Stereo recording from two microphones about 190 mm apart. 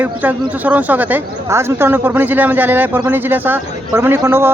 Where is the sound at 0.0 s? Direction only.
10° right (ahead or behind).